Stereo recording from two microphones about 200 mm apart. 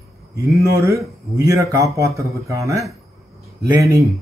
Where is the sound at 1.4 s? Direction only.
15° right (ahead or behind).